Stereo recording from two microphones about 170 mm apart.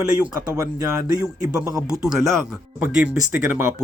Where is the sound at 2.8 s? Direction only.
10° right (ahead or behind).